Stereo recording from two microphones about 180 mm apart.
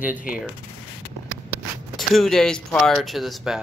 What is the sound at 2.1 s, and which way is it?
Speech, centre (ahead or behind).